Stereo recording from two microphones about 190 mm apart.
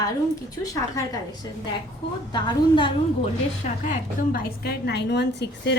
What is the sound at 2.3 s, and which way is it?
Speech, 25° left (ahead or behind).